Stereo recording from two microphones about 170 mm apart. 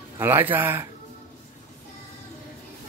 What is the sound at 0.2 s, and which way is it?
Speech, 10° right (ahead or behind).